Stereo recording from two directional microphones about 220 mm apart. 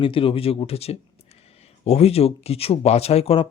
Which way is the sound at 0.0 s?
25° left (ahead or behind).